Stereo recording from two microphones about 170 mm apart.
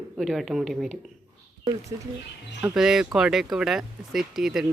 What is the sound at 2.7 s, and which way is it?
Speech, 5° right (ahead or behind).